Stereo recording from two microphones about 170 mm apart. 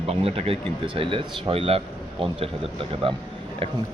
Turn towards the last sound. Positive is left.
turn(degrees=-30)  # may be behind; listen again after turning